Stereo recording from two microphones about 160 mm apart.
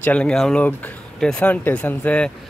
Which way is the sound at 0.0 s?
10° left (ahead or behind).